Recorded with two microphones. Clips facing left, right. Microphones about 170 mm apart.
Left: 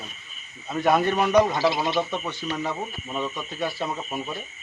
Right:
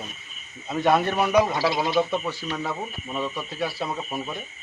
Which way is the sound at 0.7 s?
Centre (ahead or behind).